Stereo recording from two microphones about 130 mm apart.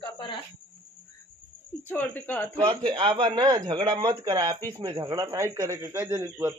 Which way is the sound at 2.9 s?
40° right (ahead or behind).